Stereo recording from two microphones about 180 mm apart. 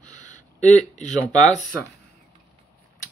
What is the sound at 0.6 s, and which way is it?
Speech, 40° left (ahead or behind).